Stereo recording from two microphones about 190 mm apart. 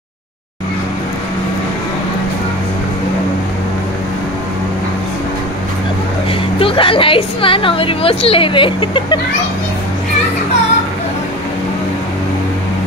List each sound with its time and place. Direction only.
6.6 s a woman's voice: 30° left (ahead or behind)